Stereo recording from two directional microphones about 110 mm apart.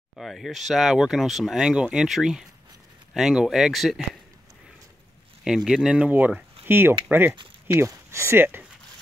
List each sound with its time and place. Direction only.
0.2 s speech: centre (ahead or behind)
5.4 s speech: 5° right (ahead or behind); by 8.6 s 20° right (ahead or behind)